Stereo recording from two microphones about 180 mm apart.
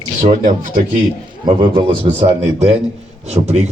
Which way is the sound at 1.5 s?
30° right (ahead or behind).